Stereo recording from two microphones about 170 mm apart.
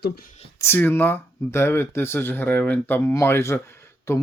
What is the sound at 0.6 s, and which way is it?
Speech, 10° left (ahead or behind).